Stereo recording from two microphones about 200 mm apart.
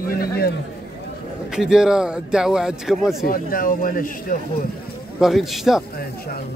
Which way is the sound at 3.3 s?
45° left (ahead or behind).